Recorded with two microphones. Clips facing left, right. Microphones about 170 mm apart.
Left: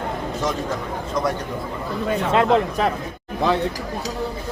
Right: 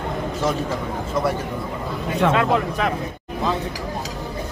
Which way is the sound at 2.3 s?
30° left (ahead or behind).